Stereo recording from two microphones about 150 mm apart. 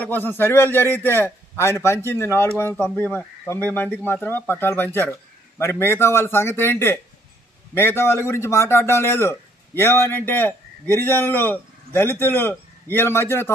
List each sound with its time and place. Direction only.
0.0 s a man's voice: 10° left (ahead or behind)